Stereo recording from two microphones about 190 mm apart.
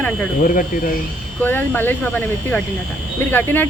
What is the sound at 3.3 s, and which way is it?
Speech, 10° left (ahead or behind).